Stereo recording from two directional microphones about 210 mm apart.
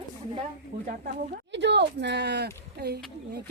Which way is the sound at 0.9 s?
40° right (ahead or behind).